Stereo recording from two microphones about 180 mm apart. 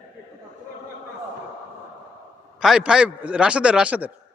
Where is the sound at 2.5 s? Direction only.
5° right (ahead or behind).